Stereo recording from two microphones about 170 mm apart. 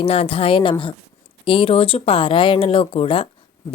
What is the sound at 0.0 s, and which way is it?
Speech, 35° left (ahead or behind).